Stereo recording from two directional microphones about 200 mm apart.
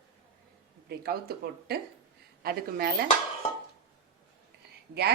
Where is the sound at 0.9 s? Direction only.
50° right (ahead or behind).